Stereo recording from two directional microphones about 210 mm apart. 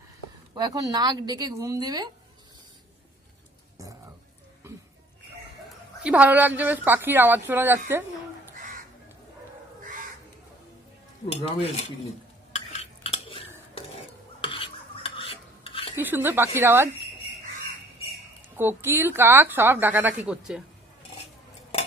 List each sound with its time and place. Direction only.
0.6 s a woman's voice: 20° right (ahead or behind)
6.0 s a woman's voice: 5° right (ahead or behind)
8.5 s crow: 35° right (ahead or behind)
11.2 s cutlery: 30° left (ahead or behind)
12.5 s stir: 30° left (ahead or behind)
16.0 s a woman's voice: 10° right (ahead or behind)
18.6 s a woman's voice: 10° right (ahead or behind)